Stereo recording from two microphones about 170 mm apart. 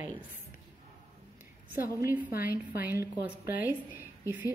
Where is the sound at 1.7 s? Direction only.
10° right (ahead or behind).